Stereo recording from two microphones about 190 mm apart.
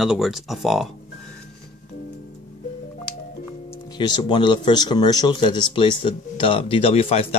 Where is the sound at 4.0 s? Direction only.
25° left (ahead or behind).